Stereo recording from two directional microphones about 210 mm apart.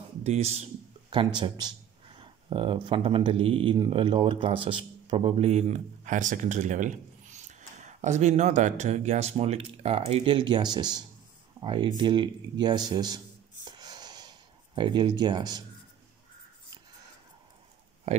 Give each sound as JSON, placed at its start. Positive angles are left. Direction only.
{"t": 0.2, "sound": "speech", "side_deg": -30}
{"t": 13.7, "sound": "a sound", "side_deg": -20}
{"t": 14.8, "sound": "speech", "side_deg": -20}